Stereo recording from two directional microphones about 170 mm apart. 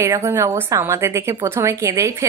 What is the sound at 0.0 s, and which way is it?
A woman's voice, 15° right (ahead or behind).